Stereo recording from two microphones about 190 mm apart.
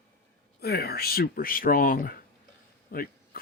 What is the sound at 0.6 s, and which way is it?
Speech, 55° left (ahead or behind).